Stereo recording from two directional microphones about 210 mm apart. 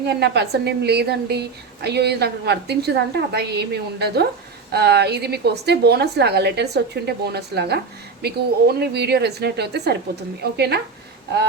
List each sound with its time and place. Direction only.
0.0 s a woman's voice: 55° right (ahead or behind)